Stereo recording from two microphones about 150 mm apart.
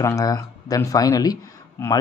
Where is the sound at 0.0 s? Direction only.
25° left (ahead or behind).